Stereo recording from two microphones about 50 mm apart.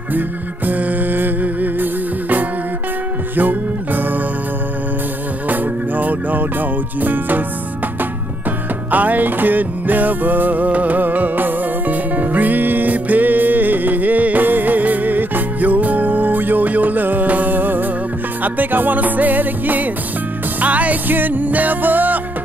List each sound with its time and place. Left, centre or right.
0.7 s music: right
5.5 s music: right
8.9 s music: right